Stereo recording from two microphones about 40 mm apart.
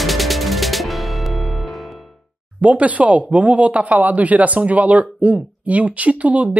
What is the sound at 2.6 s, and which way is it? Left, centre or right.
Speech, right.